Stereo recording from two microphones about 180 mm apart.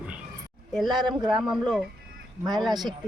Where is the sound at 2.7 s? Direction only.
25° right (ahead or behind).